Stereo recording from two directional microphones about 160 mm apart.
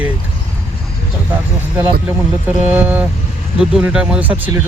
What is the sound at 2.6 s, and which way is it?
Speech, 10° right (ahead or behind).